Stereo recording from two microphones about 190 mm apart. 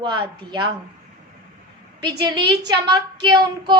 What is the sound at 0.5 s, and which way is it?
Speech, 25° right (ahead or behind).